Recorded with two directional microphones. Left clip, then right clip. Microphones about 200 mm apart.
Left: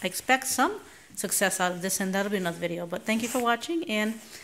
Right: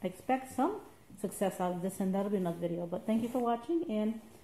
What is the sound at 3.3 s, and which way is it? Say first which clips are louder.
Speech: left 7 dB; 40° left (ahead or behind).